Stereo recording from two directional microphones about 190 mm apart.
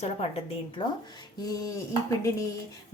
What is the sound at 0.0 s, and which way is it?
A woman's voice, 30° left (ahead or behind).